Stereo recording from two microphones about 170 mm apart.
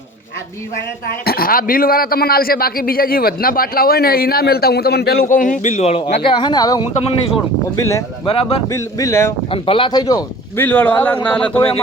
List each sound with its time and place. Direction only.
1.0 s a man's voice: 65° left (ahead or behind); by 8.0 s 15° left (ahead or behind)
8.3 s speech: 35° left (ahead or behind)
8.7 s speech: 15° left (ahead or behind)
9.5 s speech: 30° left (ahead or behind)
10.7 s speech: 10° left (ahead or behind)